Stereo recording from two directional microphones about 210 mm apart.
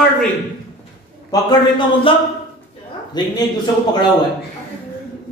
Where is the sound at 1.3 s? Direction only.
20° left (ahead or behind).